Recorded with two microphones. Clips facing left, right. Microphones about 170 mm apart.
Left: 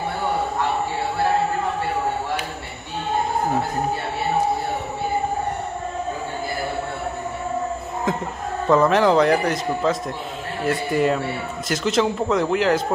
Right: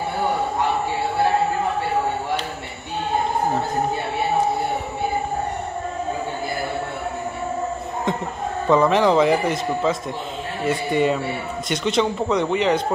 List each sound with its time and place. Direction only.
8.6 s a man's voice: centre (ahead or behind)